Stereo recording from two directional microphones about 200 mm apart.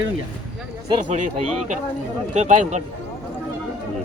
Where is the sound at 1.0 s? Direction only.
40° right (ahead or behind).